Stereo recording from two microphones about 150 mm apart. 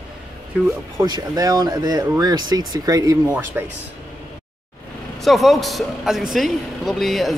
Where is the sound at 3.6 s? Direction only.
10° right (ahead or behind).